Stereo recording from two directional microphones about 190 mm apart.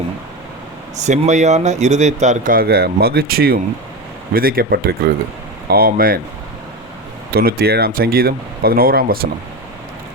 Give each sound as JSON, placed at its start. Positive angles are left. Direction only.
{"t": 0.9, "sound": "speech", "side_deg": -40}
{"t": 7.3, "sound": "speech", "side_deg": -55}